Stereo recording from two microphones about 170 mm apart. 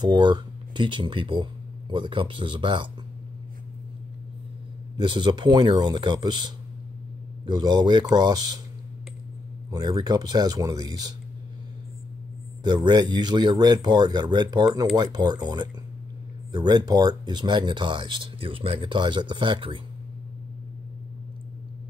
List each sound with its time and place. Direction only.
0.0 s speech: 25° right (ahead or behind)
4.9 s speech: 30° right (ahead or behind)
9.7 s speech: 25° right (ahead or behind)
12.6 s speech: 25° right (ahead or behind)